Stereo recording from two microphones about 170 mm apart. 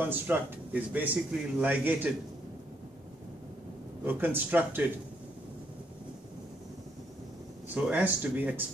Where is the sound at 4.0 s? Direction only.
10° right (ahead or behind).